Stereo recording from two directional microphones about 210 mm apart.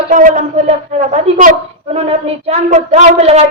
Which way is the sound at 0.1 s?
40° right (ahead or behind).